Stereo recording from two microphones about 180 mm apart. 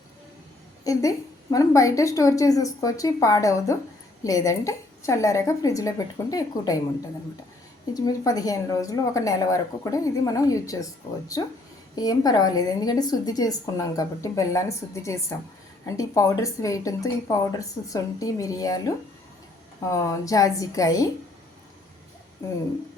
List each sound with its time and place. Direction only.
0.9 s a woman's voice: 20° left (ahead or behind)
7.9 s a woman's voice: 20° left (ahead or behind)
22.4 s a woman's voice: 15° left (ahead or behind)